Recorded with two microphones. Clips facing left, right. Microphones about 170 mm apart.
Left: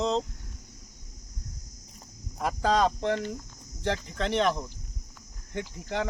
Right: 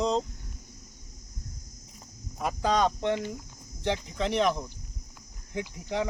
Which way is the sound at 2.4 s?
Centre (ahead or behind).